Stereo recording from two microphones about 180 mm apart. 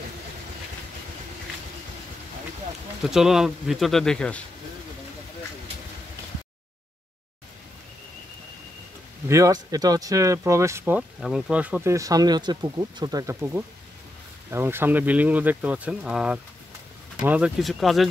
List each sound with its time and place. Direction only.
3.1 s speech: centre (ahead or behind)
9.3 s speech: 20° right (ahead or behind)
11.0 s speech: centre (ahead or behind)